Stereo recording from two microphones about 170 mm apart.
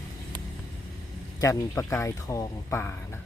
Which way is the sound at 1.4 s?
15° left (ahead or behind).